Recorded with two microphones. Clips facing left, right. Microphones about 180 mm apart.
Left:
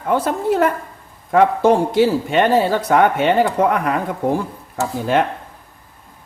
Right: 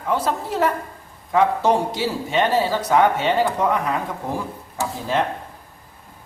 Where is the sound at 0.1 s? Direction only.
55° left (ahead or behind).